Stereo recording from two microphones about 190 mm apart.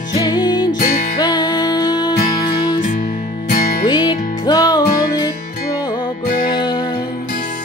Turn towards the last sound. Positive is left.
turn(degrees=20)  # may be behind; listen again after turning